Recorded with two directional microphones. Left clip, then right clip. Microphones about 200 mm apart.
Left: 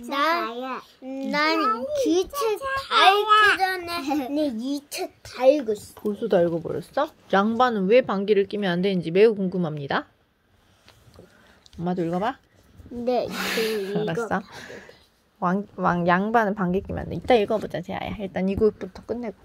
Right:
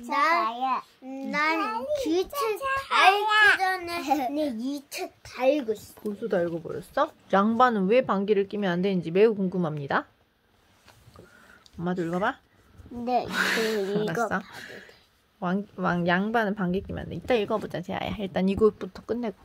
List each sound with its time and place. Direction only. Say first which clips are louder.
0.1 s babbling: even; 20° left (ahead or behind)
0.4 s babbling: right 3 dB; 10° right (ahead or behind)
1.3 s a child's voice: left 4 dB; 20° left (ahead or behind)
3.3 s speech: left 3 dB; 20° right (ahead or behind)
3.6 s a sound: left 2 dB; 20° left (ahead or behind)
4.0 s a child's voice: right 4 dB; 10° right (ahead or behind)
4.6 s a child's voice: left 3 dB; 25° left (ahead or behind)
6.9 s a woman's voice: left 1 dB; 5° left (ahead or behind)
11.8 s a woman's voice: left 2 dB; 5° left (ahead or behind)
13.0 s speech: left 1 dB; 10° right (ahead or behind)
15.3 s a sound: left 5 dB; centre (ahead or behind)
15.7 s a woman's voice: left 4 dB; 5° right (ahead or behind)
17.1 s a child's voice: left 6 dB; 10° left (ahead or behind)
17.5 s speech: left 3 dB; 5° right (ahead or behind)